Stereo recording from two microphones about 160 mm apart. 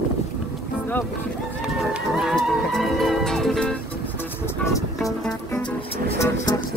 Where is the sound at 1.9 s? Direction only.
Centre (ahead or behind).